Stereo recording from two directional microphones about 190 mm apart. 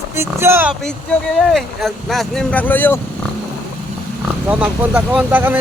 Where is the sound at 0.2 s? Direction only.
15° right (ahead or behind).